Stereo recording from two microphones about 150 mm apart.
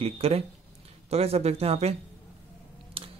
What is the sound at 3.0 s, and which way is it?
Biting, 40° right (ahead or behind).